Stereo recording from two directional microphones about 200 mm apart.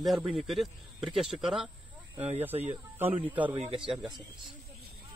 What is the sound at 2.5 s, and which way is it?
Speech, 30° right (ahead or behind).